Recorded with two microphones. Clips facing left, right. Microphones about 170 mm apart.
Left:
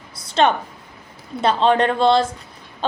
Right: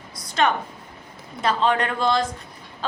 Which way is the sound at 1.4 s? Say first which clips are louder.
Left 5 dB; 30° left (ahead or behind).